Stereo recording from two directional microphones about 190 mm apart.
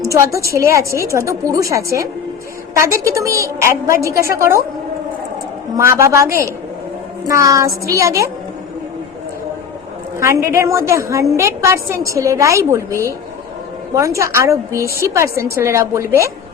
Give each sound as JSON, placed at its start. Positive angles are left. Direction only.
{"t": 0.0, "sound": "a woman's voice", "side_deg": -15}
{"t": 5.7, "sound": "a woman's voice", "side_deg": -15}
{"t": 10.2, "sound": "a woman's voice", "side_deg": -15}